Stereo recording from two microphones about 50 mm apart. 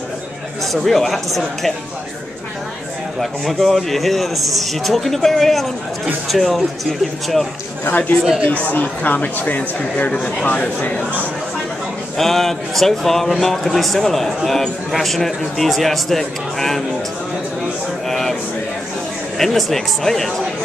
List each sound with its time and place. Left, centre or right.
0.7 s speech: centre
3.2 s speech: centre
7.9 s speech: left
12.2 s speech: centre
18.0 s a sound: centre
19.3 s speech: centre